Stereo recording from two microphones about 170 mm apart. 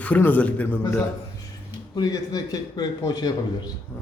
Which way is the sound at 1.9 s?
20° left (ahead or behind).